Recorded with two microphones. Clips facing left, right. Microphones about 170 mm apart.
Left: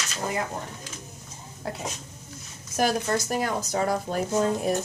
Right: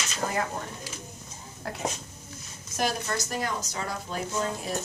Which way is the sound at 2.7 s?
45° left (ahead or behind).